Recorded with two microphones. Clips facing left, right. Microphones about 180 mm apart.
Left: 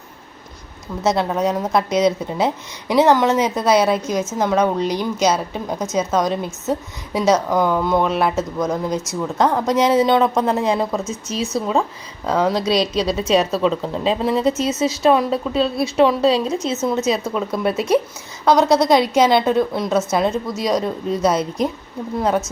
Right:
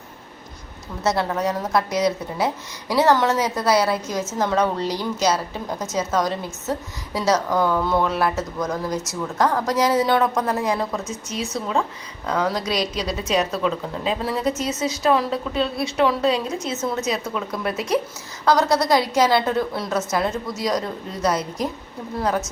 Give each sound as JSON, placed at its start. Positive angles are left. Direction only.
{"t": 1.0, "sound": "a woman's voice", "side_deg": 20}